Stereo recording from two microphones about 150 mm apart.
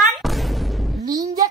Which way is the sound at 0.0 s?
Centre (ahead or behind).